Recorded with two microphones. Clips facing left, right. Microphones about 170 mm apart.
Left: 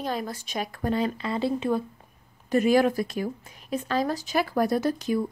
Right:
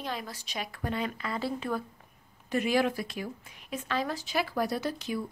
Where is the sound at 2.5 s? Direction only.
45° left (ahead or behind).